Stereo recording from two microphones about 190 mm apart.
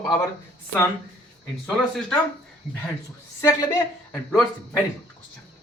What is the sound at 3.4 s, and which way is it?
Speech, 15° left (ahead or behind).